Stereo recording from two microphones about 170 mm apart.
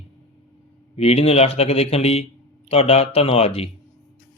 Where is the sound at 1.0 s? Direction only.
35° left (ahead or behind).